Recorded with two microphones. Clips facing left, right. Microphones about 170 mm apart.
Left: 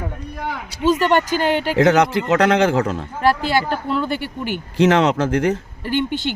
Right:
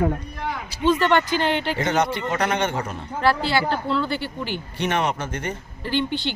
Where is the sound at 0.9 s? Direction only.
10° left (ahead or behind).